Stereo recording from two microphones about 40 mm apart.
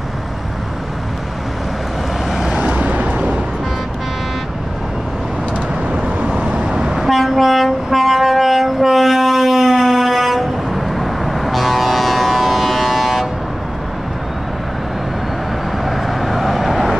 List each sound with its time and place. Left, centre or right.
2.8 s vehicle: right
5.9 s vehicle: right; by 7.0 s centre
7.0 s train: centre
15.8 s vehicle: centre